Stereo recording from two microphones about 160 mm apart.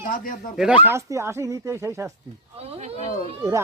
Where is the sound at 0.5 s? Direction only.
10° right (ahead or behind).